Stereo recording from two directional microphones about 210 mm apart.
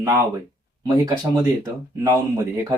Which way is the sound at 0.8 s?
20° right (ahead or behind).